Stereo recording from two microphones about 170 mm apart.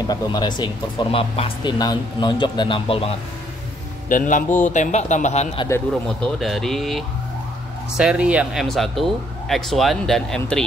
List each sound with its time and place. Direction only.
0.0 s speech: 25° left (ahead or behind)
4.1 s a man's voice: 50° left (ahead or behind)
6.0 s speech: centre (ahead or behind)